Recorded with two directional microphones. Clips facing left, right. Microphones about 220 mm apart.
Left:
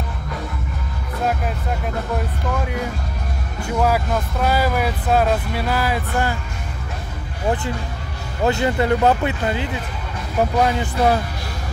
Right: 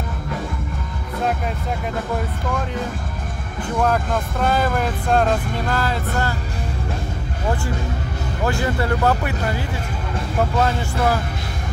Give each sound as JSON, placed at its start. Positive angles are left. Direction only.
{"t": 3.6, "sound": "speech", "side_deg": 10}
{"t": 8.5, "sound": "speech", "side_deg": 20}